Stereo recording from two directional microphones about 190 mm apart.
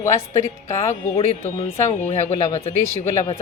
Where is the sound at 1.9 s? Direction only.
35° left (ahead or behind).